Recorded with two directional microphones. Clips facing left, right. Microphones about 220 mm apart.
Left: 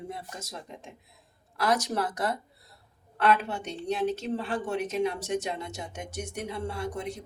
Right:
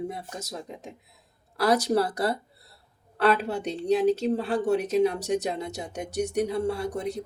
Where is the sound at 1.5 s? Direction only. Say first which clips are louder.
Right 5 dB; 35° right (ahead or behind).